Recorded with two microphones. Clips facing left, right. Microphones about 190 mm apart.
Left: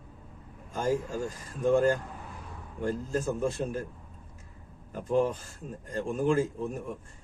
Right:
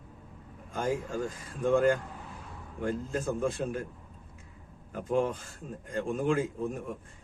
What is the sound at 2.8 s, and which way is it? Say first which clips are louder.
Speech: left 2 dB; 35° left (ahead or behind).